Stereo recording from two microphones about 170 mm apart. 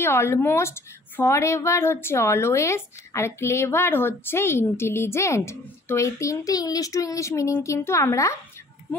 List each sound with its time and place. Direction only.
0.0 s a woman's voice: 15° left (ahead or behind)